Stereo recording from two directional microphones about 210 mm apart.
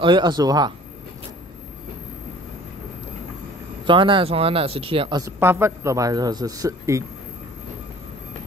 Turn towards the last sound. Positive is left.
turn(degrees=-15)  # may be behind; listen again after turning